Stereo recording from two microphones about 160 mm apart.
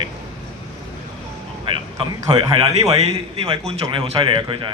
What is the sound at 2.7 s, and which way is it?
A man's voice, 40° right (ahead or behind).